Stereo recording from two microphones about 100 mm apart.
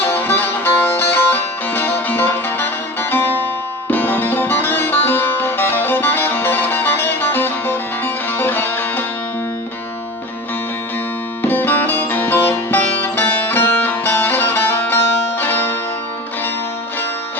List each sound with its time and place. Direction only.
0.0 s music: 20° left (ahead or behind)
11.4 s music: 20° left (ahead or behind)